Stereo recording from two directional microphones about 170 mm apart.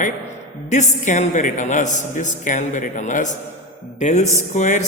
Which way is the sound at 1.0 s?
45° left (ahead or behind).